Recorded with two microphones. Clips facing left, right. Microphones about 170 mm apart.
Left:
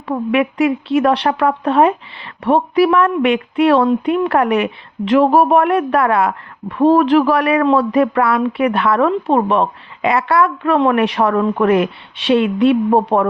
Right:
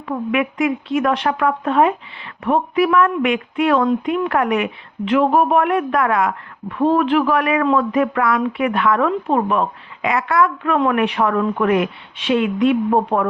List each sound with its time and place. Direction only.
0.1 s a woman's voice: 35° left (ahead or behind)